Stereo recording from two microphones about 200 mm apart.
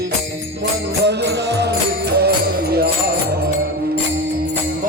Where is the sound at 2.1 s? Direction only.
55° right (ahead or behind).